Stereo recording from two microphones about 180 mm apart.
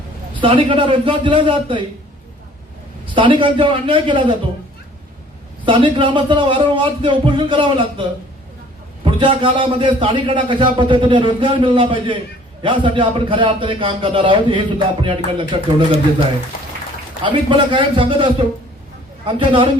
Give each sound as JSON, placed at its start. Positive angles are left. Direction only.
{"t": 0.4, "sound": "a man's voice", "side_deg": -30}
{"t": 3.2, "sound": "a man's voice", "side_deg": -30}
{"t": 5.6, "sound": "a man's voice", "side_deg": -30}
{"t": 9.0, "sound": "a man's voice", "side_deg": -25}
{"t": 17.2, "sound": "a man's voice", "side_deg": -25}